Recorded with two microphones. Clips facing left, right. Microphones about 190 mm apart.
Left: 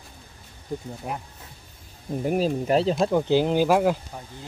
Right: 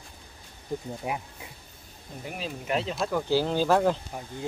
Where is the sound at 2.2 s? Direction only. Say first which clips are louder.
Left 11 dB; 40° left (ahead or behind).